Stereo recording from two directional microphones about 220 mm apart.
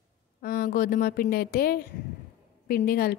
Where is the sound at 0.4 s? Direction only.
40° left (ahead or behind).